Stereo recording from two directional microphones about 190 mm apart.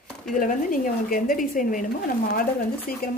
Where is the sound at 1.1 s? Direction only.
45° left (ahead or behind).